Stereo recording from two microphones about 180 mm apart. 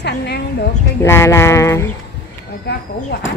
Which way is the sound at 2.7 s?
65° left (ahead or behind).